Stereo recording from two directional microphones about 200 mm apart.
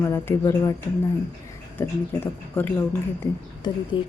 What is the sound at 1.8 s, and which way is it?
Speech, 10° left (ahead or behind).